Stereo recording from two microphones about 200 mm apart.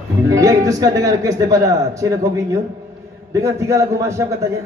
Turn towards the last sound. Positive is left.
turn(degrees=-15)  # may be behind; listen again after turning